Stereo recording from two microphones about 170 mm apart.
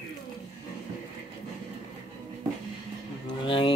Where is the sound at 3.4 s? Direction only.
30° left (ahead or behind).